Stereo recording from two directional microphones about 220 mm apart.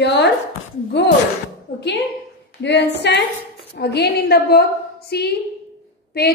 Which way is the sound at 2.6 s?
50° left (ahead or behind).